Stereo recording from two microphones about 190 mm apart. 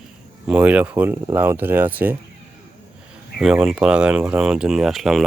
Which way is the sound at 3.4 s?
5° right (ahead or behind).